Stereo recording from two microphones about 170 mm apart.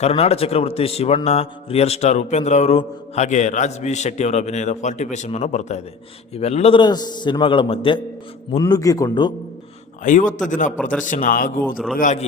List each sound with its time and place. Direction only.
0.0 s a man's voice: 35° left (ahead or behind)
10.0 s speech: 50° left (ahead or behind)